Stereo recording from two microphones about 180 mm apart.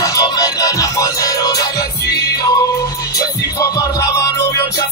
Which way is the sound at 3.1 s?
20° left (ahead or behind).